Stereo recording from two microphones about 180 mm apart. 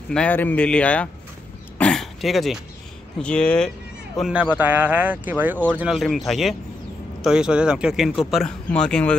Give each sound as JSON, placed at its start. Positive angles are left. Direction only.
{"t": 0.1, "sound": "speech", "side_deg": 10}
{"t": 1.8, "sound": "throat clearing", "side_deg": 5}
{"t": 3.2, "sound": "speech", "side_deg": 5}
{"t": 4.2, "sound": "speech", "side_deg": -5}